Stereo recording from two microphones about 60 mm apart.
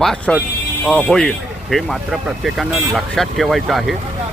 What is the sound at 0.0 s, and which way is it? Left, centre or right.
Speech, centre.